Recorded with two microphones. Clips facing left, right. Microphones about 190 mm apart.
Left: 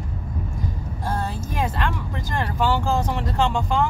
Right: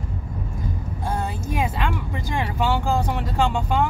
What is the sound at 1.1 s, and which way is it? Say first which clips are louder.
Speech: right 1 dB; 15° right (ahead or behind).